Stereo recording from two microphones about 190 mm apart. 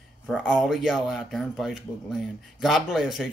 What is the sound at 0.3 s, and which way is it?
A man's voice, centre (ahead or behind).